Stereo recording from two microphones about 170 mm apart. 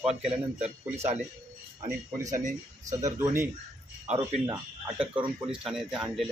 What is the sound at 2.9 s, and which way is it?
A man's voice, 20° right (ahead or behind).